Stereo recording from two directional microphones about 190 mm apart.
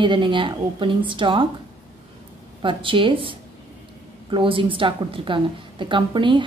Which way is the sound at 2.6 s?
25° right (ahead or behind).